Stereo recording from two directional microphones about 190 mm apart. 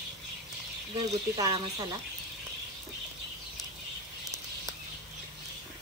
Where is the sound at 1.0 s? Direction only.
20° right (ahead or behind).